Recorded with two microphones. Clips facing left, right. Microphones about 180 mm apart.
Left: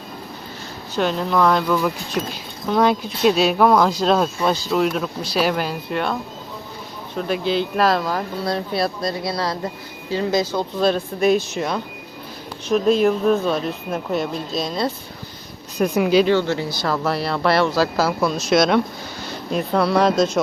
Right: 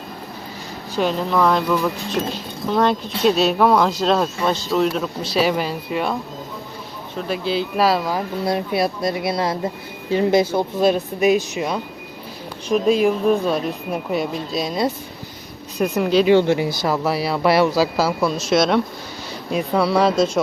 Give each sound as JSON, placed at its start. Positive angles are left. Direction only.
{"t": 0.9, "sound": "speech", "side_deg": 0}
{"t": 7.3, "sound": "speech", "side_deg": -5}
{"t": 12.7, "sound": "speech", "side_deg": -5}
{"t": 15.8, "sound": "speech", "side_deg": 5}
{"t": 16.2, "sound": "speech", "side_deg": -15}